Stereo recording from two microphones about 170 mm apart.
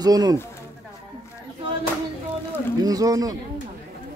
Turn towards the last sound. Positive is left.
turn(degrees=-20)  # may be behind; listen again after turning